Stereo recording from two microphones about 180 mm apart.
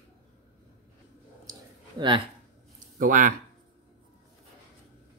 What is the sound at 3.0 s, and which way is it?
Speech, 50° right (ahead or behind).